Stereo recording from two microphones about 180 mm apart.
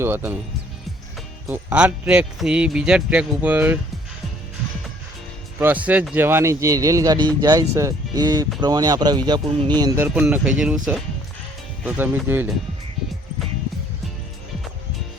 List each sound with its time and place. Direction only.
0.0 s speech: 10° right (ahead or behind)
1.5 s speech: 10° right (ahead or behind)
5.5 s speech: 10° right (ahead or behind)
10.0 s speech: 10° right (ahead or behind)
11.9 s speech: 10° right (ahead or behind)